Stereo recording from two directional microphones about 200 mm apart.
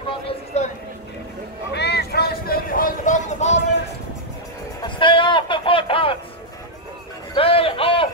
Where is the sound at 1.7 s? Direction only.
55° left (ahead or behind); by 3.6 s 35° left (ahead or behind).